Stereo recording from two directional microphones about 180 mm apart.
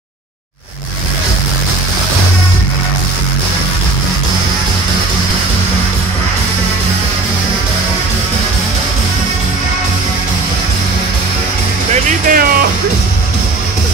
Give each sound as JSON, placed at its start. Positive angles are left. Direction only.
{"t": 11.9, "sound": "music", "side_deg": -50}